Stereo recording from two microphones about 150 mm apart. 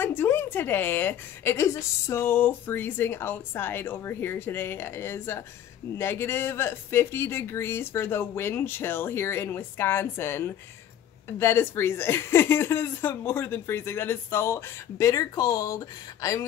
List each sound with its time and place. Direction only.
0.0 s a woman's voice: 15° left (ahead or behind)